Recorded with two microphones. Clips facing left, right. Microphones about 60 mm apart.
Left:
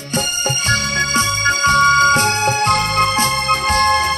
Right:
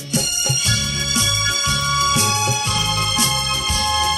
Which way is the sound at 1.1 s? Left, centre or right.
Left.